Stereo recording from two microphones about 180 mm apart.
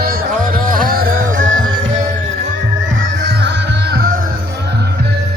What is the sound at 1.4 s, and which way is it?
Music, 90° right.